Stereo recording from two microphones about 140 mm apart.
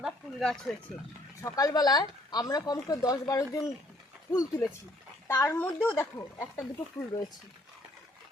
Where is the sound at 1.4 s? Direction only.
25° left (ahead or behind).